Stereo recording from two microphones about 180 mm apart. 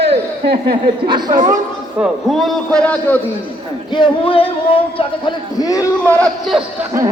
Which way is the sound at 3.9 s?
25° left (ahead or behind).